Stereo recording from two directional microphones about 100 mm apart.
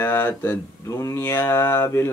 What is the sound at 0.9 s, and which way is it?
Speech, 30° left (ahead or behind).